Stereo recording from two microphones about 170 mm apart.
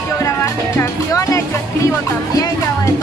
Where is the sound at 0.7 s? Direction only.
20° left (ahead or behind).